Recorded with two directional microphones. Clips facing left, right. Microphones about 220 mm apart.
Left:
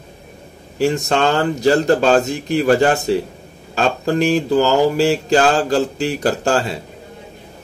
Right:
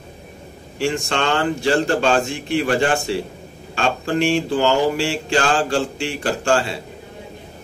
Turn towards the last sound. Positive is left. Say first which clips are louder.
# left 2 dB
turn(degrees=40)  # may be behind; listen again after turning